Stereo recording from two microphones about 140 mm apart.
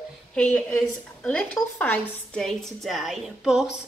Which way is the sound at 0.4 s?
10° left (ahead or behind).